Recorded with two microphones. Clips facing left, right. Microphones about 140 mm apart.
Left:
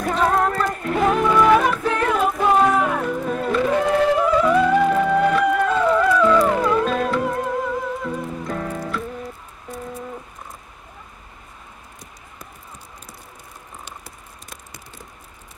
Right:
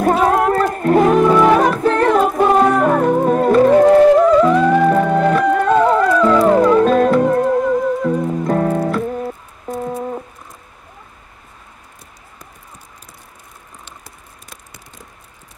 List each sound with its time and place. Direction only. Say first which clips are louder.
0.0 s music: right 6 dB; 50° right (ahead or behind)